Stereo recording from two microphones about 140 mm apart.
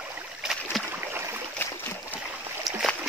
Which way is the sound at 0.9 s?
15° right (ahead or behind).